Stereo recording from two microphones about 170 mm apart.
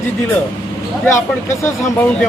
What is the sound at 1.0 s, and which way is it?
Speech, 15° left (ahead or behind).